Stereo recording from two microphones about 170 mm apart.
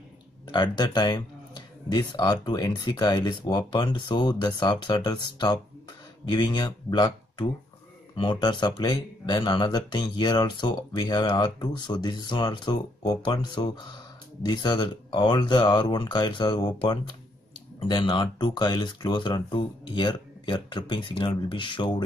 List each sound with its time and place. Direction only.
0.5 s speech: 25° left (ahead or behind)